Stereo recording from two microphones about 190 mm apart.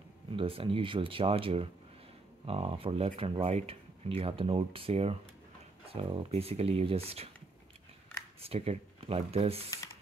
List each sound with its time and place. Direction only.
0.4 s speech: 30° right (ahead or behind)
8.4 s speech: 30° right (ahead or behind)